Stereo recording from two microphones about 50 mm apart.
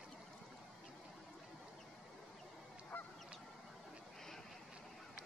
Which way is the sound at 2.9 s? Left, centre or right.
Left.